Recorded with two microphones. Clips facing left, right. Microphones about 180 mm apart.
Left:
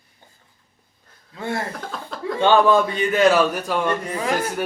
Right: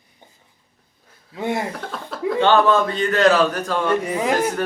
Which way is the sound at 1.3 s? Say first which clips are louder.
Right 3 dB; 20° right (ahead or behind).